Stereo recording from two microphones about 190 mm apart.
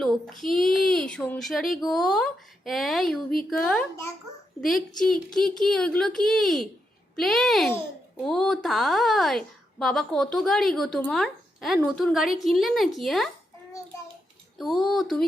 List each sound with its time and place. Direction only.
0.0 s a child's voice: centre (ahead or behind)
14.6 s a woman's voice: centre (ahead or behind)